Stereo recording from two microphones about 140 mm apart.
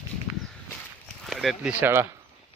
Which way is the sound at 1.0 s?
Centre (ahead or behind).